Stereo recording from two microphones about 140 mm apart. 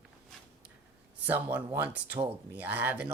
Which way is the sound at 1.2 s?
10° right (ahead or behind).